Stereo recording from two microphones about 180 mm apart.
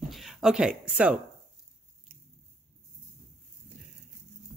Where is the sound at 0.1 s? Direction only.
Centre (ahead or behind).